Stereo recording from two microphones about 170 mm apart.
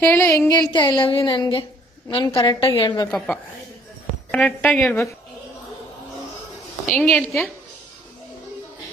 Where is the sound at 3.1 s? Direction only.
Centre (ahead or behind).